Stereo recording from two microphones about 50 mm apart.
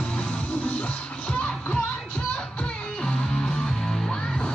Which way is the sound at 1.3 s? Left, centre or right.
Left.